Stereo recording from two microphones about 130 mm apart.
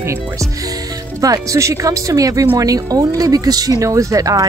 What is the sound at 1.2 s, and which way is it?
Speech, 25° right (ahead or behind).